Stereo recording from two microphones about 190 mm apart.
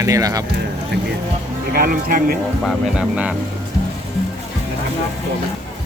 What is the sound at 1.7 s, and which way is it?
Speech, 50° right (ahead or behind).